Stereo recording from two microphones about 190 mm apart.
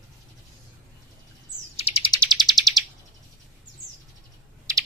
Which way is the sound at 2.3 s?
20° right (ahead or behind).